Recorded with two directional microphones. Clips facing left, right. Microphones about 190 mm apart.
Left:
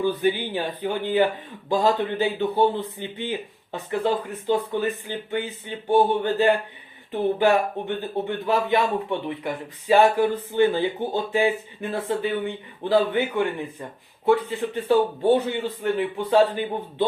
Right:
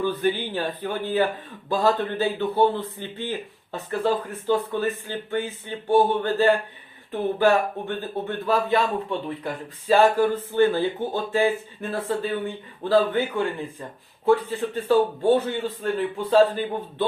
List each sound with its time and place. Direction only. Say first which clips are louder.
0.0 s speech: left 1 dB; 15° left (ahead or behind)